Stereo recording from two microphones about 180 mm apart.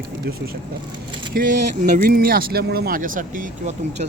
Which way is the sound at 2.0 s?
55° right (ahead or behind).